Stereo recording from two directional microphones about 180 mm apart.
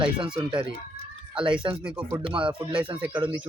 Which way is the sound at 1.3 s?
5° right (ahead or behind).